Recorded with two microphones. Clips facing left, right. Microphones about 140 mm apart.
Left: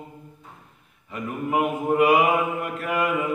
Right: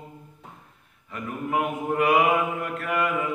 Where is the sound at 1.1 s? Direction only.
5° left (ahead or behind).